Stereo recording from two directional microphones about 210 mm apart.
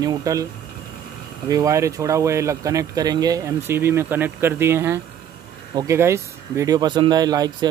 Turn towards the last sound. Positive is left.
turn(degrees=-20)  # may be behind; listen again after turning